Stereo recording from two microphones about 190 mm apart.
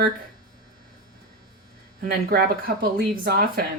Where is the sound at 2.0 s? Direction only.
55° right (ahead or behind).